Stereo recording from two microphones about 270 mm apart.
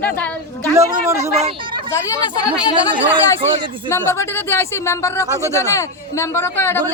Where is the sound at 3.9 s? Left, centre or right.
Centre.